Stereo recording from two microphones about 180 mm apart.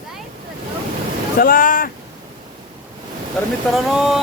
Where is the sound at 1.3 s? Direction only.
50° left (ahead or behind).